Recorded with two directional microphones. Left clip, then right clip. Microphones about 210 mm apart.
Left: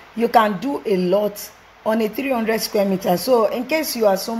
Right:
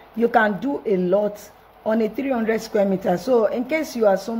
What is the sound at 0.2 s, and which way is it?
Speech, 25° left (ahead or behind).